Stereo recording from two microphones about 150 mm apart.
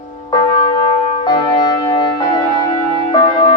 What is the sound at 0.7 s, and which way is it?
Music, 45° left (ahead or behind).